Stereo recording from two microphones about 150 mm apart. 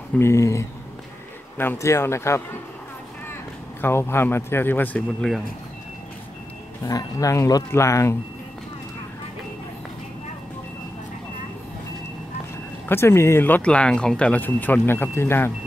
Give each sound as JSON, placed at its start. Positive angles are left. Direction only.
{"t": 0.2, "sound": "speech", "side_deg": 20}
{"t": 3.8, "sound": "speech", "side_deg": 15}
{"t": 6.8, "sound": "speech", "side_deg": 25}
{"t": 12.8, "sound": "speech", "side_deg": 15}